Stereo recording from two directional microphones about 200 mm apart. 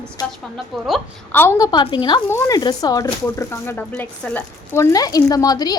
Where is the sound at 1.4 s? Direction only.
15° left (ahead or behind).